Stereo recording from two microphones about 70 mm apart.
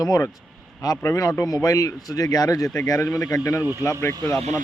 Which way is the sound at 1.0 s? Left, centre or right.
Left.